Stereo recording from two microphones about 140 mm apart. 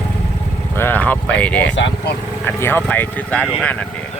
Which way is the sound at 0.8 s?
15° left (ahead or behind).